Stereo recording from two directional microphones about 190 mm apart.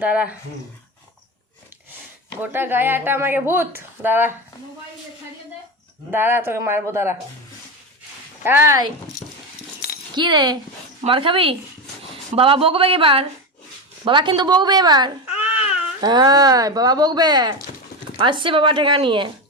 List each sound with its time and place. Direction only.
0.0 s speech: 5° right (ahead or behind)
2.4 s speech: 10° right (ahead or behind)
6.1 s speech: 10° right (ahead or behind)
8.4 s speech: 10° right (ahead or behind)
10.2 s speech: 25° right (ahead or behind)